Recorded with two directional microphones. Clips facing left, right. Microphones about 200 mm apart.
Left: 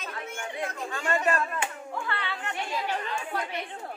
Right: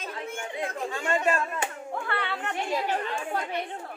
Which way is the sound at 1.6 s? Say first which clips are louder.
Right 1 dB; 50° right (ahead or behind).